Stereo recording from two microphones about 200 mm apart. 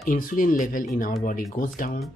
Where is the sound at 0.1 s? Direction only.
45° left (ahead or behind).